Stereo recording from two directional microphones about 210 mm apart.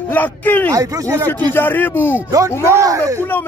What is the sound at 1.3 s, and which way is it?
Speech, 10° left (ahead or behind).